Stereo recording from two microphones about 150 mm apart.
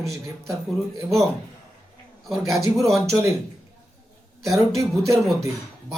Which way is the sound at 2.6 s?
20° right (ahead or behind).